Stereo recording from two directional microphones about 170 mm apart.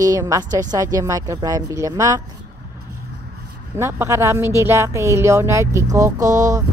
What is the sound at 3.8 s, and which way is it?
Speech, 15° right (ahead or behind).